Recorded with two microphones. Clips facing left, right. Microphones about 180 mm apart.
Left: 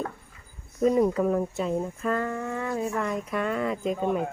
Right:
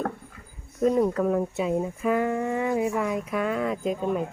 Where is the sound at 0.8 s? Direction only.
Centre (ahead or behind).